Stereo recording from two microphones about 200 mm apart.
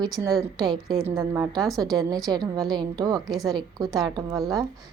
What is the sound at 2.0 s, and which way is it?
A woman's voice, 20° right (ahead or behind).